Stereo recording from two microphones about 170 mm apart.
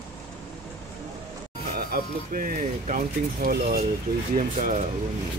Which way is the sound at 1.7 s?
55° right (ahead or behind).